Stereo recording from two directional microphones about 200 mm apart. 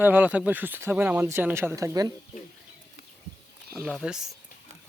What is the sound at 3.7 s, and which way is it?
Speech, 5° right (ahead or behind).